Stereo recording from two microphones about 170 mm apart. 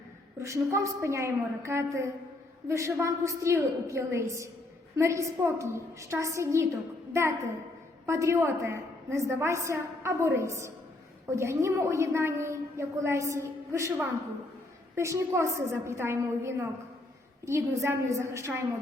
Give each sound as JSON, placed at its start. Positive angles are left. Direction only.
{"t": 0.3, "sound": "a woman's voice", "side_deg": -15}
{"t": 14.9, "sound": "a woman's voice", "side_deg": -15}